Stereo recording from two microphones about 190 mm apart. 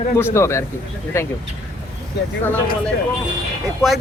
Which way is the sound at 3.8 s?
15° left (ahead or behind).